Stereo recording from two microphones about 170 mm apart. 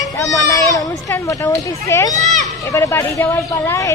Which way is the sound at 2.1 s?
45° right (ahead or behind).